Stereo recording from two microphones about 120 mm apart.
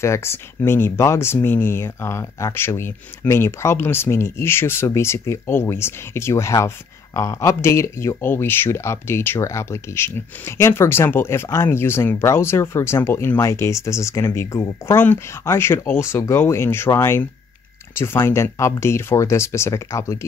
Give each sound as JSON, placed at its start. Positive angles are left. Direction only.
{"t": 0.0, "sound": "speech", "side_deg": 20}